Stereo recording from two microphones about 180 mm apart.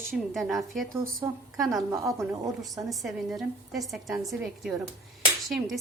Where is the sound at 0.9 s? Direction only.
15° right (ahead or behind).